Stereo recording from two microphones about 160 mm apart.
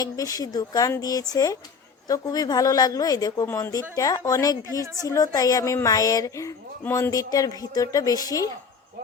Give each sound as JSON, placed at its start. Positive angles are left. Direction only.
{"t": 0.0, "sound": "speech", "side_deg": 20}